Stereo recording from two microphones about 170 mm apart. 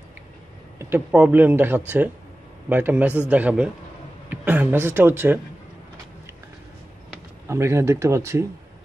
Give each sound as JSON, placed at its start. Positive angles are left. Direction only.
{"t": 0.7, "sound": "speech", "side_deg": -15}
{"t": 7.4, "sound": "speech", "side_deg": -15}